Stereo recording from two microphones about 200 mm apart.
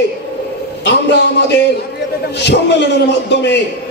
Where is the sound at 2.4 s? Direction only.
60° left (ahead or behind).